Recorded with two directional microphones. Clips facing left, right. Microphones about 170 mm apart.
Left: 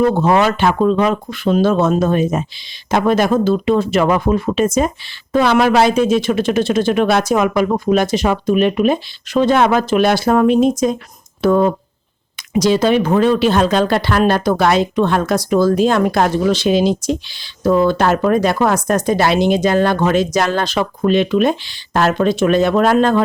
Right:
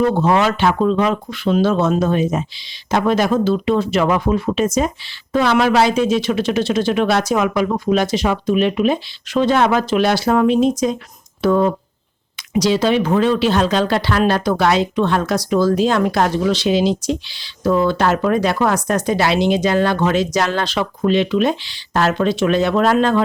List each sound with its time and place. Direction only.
0.2 s speech: 45° left (ahead or behind)